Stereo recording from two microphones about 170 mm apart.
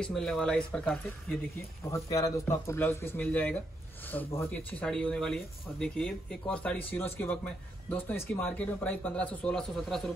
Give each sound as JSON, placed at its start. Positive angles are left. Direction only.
{"t": 0.0, "sound": "speech", "side_deg": 0}
{"t": 1.9, "sound": "speech", "side_deg": 20}